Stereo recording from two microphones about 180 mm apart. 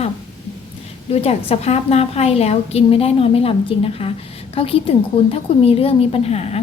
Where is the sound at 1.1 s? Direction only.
35° left (ahead or behind).